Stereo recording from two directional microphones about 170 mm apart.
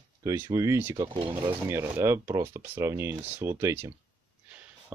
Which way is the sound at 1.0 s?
30° right (ahead or behind).